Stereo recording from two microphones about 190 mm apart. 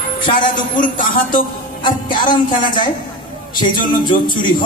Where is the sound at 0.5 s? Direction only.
45° left (ahead or behind).